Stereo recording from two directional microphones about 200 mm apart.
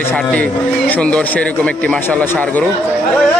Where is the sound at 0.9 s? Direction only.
5° left (ahead or behind).